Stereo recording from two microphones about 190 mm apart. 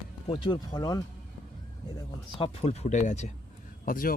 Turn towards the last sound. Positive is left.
turn(degrees=50)  # may be behind; listen again after turning